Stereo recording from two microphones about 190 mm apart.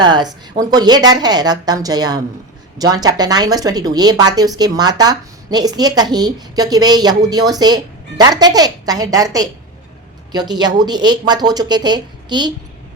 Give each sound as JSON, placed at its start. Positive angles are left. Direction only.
{"t": 0.0, "sound": "a woman's voice", "side_deg": -25}